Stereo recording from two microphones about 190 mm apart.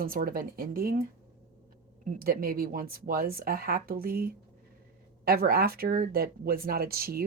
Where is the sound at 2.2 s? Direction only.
50° right (ahead or behind).